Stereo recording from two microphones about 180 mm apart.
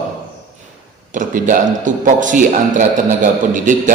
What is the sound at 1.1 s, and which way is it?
A man's voice, 45° right (ahead or behind).